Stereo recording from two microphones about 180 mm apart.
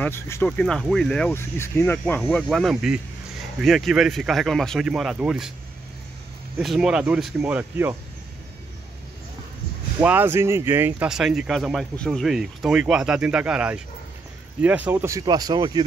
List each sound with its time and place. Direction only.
0.0 s speech: 10° left (ahead or behind); by 5.5 s 5° right (ahead or behind)
6.6 s speech: centre (ahead or behind)
9.9 s speech: 10° right (ahead or behind)